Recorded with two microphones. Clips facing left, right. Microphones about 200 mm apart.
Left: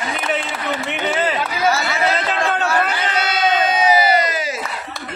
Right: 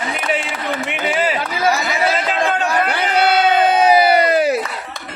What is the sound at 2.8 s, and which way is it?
Crowd, 60° right (ahead or behind).